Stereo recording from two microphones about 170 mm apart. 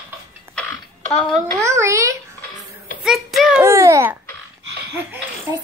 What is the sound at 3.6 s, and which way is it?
Babbling, 15° right (ahead or behind).